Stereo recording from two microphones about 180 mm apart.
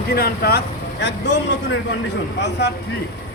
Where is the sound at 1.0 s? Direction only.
80° left.